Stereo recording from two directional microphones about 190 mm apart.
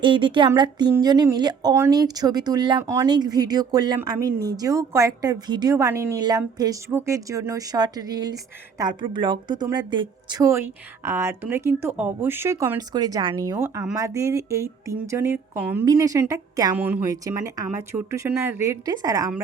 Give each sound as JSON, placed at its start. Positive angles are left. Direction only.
{"t": 0.0, "sound": "speech", "side_deg": -25}